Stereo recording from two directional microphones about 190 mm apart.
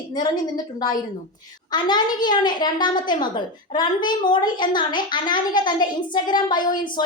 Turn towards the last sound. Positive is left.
turn(degrees=25)  # may be behind; listen again after turning